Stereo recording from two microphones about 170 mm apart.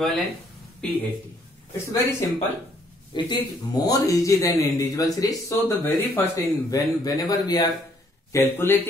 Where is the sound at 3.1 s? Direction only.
25° left (ahead or behind).